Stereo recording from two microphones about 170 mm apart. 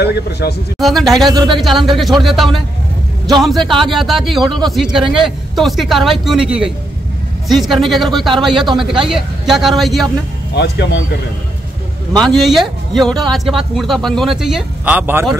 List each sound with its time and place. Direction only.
0.0 s speech: 75° left (ahead or behind)
0.7 s speech: centre (ahead or behind)
8.5 s speech: 30° right (ahead or behind)
8.7 s speech: centre (ahead or behind)
10.5 s speech: 85° left
12.2 s speech: centre (ahead or behind)